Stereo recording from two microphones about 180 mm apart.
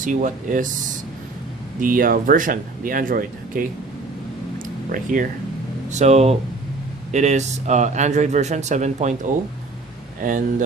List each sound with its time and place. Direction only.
0.0 s speech: 45° right (ahead or behind)
4.6 s a sound: 50° right (ahead or behind)
5.9 s a man's voice: 40° right (ahead or behind)